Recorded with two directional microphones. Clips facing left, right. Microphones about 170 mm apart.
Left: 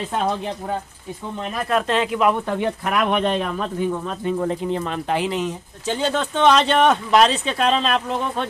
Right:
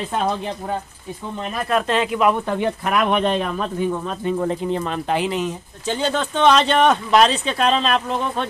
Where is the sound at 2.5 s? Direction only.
25° right (ahead or behind).